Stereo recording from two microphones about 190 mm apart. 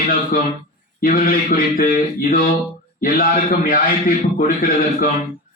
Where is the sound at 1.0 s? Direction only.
45° left (ahead or behind).